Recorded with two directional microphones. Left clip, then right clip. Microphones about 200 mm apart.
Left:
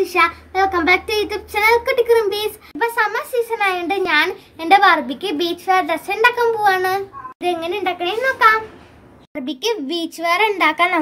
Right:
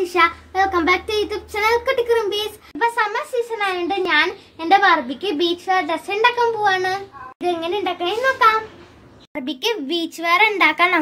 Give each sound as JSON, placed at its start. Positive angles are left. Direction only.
{"t": 0.1, "sound": "child singing", "side_deg": 0}
{"t": 3.4, "sound": "a child's voice", "side_deg": 10}
{"t": 7.4, "sound": "child singing", "side_deg": 0}
{"t": 9.3, "sound": "a child's voice", "side_deg": 10}